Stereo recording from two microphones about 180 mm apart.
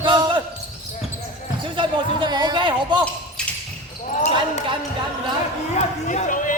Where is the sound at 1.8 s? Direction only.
25° right (ahead or behind).